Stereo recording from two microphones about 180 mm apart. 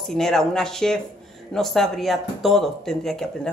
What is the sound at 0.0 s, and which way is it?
Speech, 5° left (ahead or behind).